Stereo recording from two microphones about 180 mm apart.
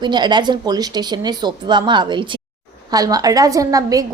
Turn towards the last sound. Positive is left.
turn(degrees=-20)  # may be behind; listen again after turning